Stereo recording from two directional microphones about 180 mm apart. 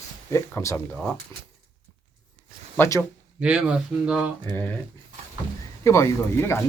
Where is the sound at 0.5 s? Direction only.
10° left (ahead or behind).